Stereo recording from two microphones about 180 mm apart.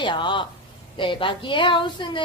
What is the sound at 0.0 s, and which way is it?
Speech, 25° left (ahead or behind).